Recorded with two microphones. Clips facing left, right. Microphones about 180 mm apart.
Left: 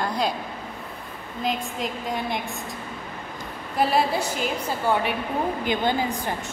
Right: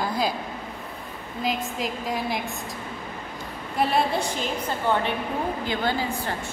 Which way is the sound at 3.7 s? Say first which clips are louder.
Left 1 dB; centre (ahead or behind).